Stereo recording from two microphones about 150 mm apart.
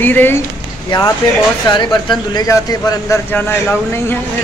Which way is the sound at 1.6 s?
30° left (ahead or behind).